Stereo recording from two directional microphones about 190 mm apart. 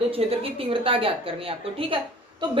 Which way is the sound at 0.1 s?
30° right (ahead or behind).